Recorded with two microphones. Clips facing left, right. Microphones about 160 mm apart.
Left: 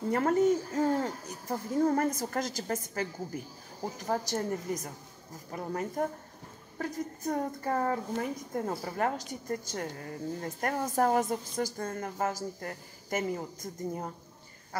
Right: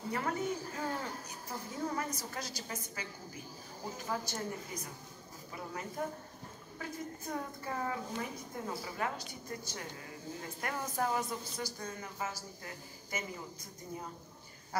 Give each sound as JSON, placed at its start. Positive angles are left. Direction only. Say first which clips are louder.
{"t": 0.1, "sound": "a woman's voice", "louder": "left 11 dB", "side_deg": 45}